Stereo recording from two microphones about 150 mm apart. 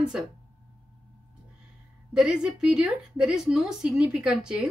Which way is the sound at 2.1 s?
5° right (ahead or behind).